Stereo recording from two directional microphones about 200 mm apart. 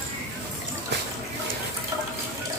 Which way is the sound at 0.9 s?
60° right (ahead or behind).